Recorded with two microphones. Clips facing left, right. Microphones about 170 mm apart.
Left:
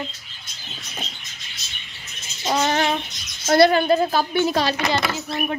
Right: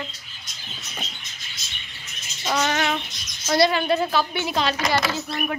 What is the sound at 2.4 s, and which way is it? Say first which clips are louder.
Child singing: left 3 dB; 30° left (ahead or behind).